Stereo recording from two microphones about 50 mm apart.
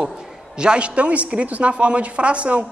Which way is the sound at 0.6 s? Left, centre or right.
Centre.